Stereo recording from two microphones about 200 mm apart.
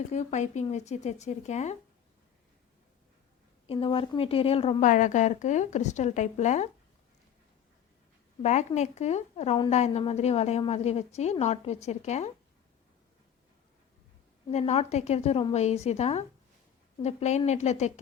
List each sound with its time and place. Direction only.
0.1 s a woman's voice: 35° left (ahead or behind)
3.7 s a woman's voice: 25° left (ahead or behind)
8.4 s a woman's voice: 35° left (ahead or behind)
14.5 s a woman's voice: 30° left (ahead or behind)